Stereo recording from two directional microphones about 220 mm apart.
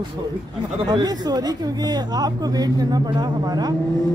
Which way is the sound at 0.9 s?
20° right (ahead or behind).